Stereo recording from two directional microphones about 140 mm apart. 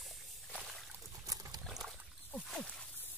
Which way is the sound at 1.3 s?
25° right (ahead or behind).